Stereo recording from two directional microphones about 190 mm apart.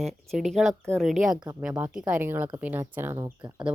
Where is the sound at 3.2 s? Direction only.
25° right (ahead or behind).